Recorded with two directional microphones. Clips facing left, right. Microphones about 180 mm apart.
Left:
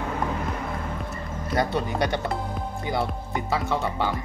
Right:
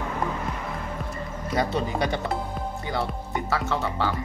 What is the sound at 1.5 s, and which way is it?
Speech, centre (ahead or behind).